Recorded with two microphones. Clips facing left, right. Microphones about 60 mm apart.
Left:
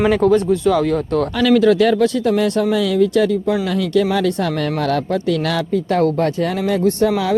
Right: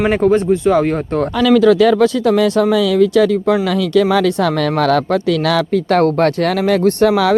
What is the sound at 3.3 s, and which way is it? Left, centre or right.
Speech, right.